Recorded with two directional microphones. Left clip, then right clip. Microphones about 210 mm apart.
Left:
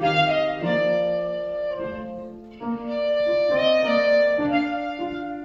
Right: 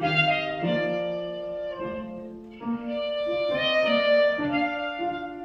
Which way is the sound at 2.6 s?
5° left (ahead or behind).